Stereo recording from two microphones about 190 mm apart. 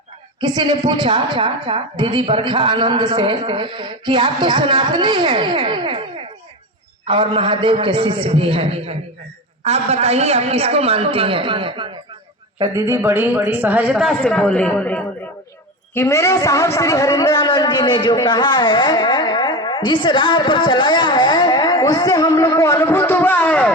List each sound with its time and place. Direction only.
0.3 s a woman's voice: 20° right (ahead or behind)
7.1 s a woman's voice: 30° right (ahead or behind); by 23.7 s 10° left (ahead or behind)